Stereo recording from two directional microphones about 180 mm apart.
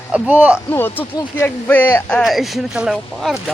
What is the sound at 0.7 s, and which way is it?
Speech, 10° left (ahead or behind).